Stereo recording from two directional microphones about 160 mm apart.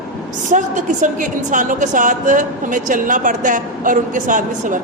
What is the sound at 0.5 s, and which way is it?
A woman's voice, 50° right (ahead or behind).